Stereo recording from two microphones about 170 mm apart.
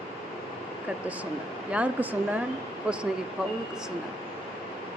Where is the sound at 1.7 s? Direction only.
10° right (ahead or behind).